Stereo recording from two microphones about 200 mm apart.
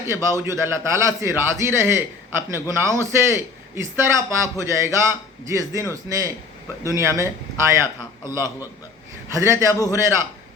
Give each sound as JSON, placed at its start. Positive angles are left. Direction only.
{"t": 0.1, "sound": "a man's voice", "side_deg": -15}